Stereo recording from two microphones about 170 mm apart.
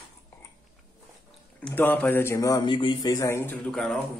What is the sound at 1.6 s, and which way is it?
A man's voice, 10° left (ahead or behind).